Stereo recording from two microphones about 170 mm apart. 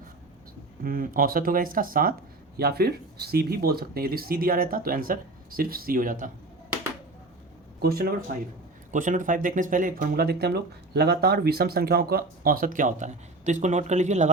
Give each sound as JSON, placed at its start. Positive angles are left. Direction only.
{"t": 0.9, "sound": "speech", "side_deg": -55}
{"t": 2.6, "sound": "speech", "side_deg": -65}
{"t": 7.8, "sound": "speech", "side_deg": -65}
{"t": 8.9, "sound": "speech", "side_deg": -50}